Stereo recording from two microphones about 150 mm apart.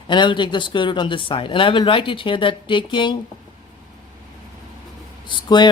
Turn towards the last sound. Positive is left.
turn(degrees=30)  # may be behind; listen again after turning